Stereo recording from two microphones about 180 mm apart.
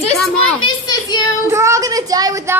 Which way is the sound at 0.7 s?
25° left (ahead or behind).